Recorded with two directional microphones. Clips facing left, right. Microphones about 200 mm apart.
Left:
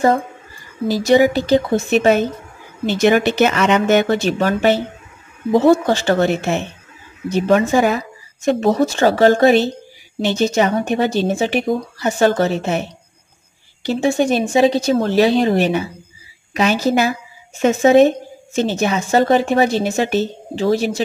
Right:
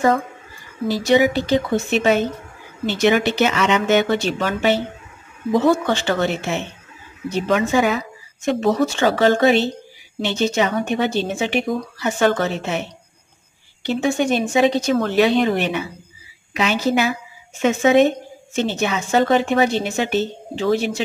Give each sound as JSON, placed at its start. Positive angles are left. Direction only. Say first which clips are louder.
{"t": 0.8, "sound": "speech", "louder": "left 3 dB", "side_deg": 45}
{"t": 13.8, "sound": "speech", "louder": "left 3 dB", "side_deg": 35}